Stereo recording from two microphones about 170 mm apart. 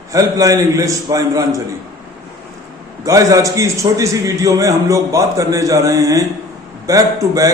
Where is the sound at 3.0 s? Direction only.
20° right (ahead or behind).